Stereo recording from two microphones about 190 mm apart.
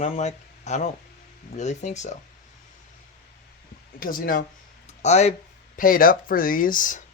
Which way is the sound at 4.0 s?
45° left (ahead or behind).